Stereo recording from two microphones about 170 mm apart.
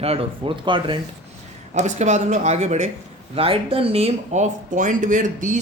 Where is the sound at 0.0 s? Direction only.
35° right (ahead or behind).